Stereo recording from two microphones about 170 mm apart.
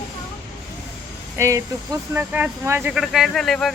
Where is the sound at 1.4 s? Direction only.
20° right (ahead or behind).